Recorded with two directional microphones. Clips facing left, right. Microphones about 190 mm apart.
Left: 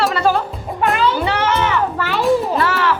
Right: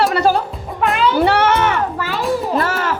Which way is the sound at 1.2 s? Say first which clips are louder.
Right 4 dB; 55° right (ahead or behind).